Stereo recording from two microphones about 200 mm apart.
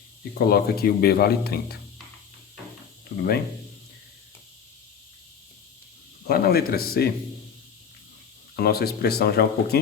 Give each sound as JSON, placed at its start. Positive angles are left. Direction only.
{"t": 0.3, "sound": "speech", "side_deg": 50}
{"t": 6.2, "sound": "speech", "side_deg": 50}
{"t": 8.5, "sound": "speech", "side_deg": 50}